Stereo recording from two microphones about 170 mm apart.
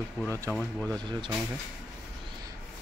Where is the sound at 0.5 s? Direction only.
5° left (ahead or behind).